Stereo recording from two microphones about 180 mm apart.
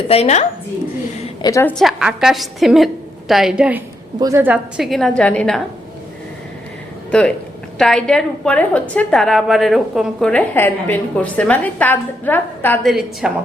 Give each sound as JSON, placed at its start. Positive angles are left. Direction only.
{"t": 0.1, "sound": "speech", "side_deg": 35}
{"t": 1.4, "sound": "a woman's voice", "side_deg": 20}
{"t": 1.7, "sound": "a woman's voice", "side_deg": 0}
{"t": 7.1, "sound": "a woman's voice", "side_deg": 5}
{"t": 12.9, "sound": "a woman's voice", "side_deg": 0}